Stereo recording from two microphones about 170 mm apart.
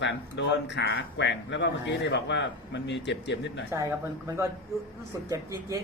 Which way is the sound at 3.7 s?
15° right (ahead or behind).